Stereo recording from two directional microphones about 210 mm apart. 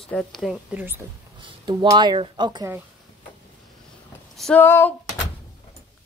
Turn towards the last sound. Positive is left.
turn(degrees=10)  # may be behind; listen again after turning